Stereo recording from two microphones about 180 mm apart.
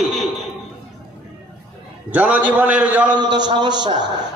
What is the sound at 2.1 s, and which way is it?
A man's voice, 10° right (ahead or behind).